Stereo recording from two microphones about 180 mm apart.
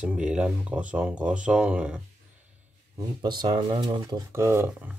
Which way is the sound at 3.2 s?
25° right (ahead or behind).